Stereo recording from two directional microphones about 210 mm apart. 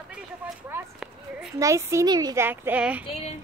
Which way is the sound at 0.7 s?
5° right (ahead or behind).